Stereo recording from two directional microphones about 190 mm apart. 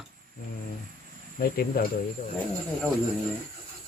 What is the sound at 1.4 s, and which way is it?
Speech, 55° left (ahead or behind).